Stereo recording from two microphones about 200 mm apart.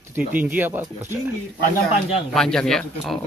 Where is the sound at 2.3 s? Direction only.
5° left (ahead or behind).